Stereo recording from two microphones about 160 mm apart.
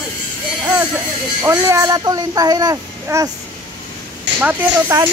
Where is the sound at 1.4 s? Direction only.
15° right (ahead or behind).